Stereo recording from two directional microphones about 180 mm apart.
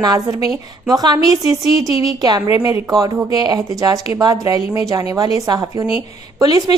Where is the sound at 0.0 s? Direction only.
20° right (ahead or behind).